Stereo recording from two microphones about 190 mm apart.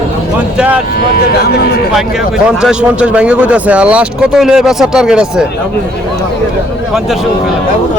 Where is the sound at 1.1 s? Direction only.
55° left (ahead or behind).